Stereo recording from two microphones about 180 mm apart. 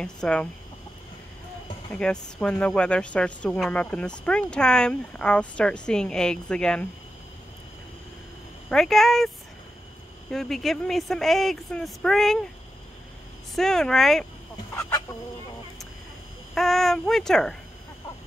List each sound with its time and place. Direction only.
0.0 s a woman's voice: 5° left (ahead or behind)
2.0 s a woman's voice: 5° left (ahead or behind)
8.6 s a woman's voice: centre (ahead or behind)
10.3 s a woman's voice: centre (ahead or behind)
13.6 s a woman's voice: 5° left (ahead or behind)
14.7 s chicken: 15° left (ahead or behind)
16.5 s a child's voice: centre (ahead or behind)